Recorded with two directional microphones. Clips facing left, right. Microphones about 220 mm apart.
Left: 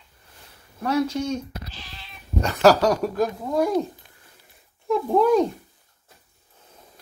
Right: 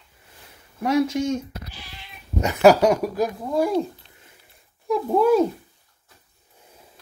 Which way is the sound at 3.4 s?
Centre (ahead or behind).